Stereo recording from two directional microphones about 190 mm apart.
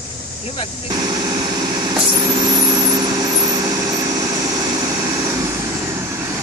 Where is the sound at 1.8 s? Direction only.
25° right (ahead or behind).